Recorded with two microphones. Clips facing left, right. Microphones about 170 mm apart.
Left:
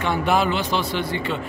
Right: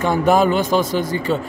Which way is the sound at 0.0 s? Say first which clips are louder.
Right 5 dB; 45° right (ahead or behind).